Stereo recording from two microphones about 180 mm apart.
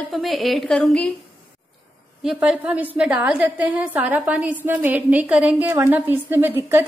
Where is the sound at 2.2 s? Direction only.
5° right (ahead or behind).